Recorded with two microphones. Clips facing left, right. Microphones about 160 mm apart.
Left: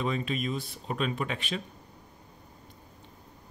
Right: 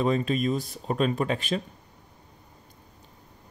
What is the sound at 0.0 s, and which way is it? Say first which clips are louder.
Speech: right 6 dB; 40° right (ahead or behind).